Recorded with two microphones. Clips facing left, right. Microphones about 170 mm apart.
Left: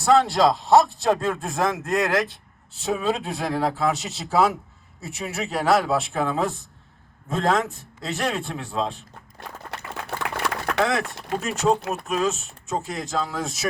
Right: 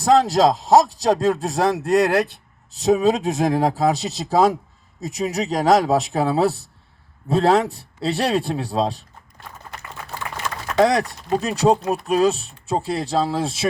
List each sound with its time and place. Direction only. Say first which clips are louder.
0.1 s speech: right 3 dB; 40° right (ahead or behind)
10.1 s a sound: left 2 dB; 65° left (ahead or behind)
10.8 s speech: right 6 dB; 35° right (ahead or behind)